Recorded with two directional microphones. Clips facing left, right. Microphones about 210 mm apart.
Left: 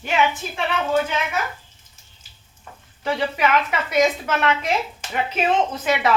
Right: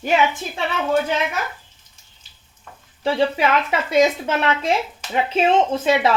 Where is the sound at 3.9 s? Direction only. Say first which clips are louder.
Right 2 dB; 25° right (ahead or behind).